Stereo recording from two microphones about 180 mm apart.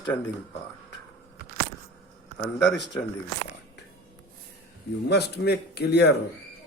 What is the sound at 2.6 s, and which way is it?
Speech, 75° left (ahead or behind).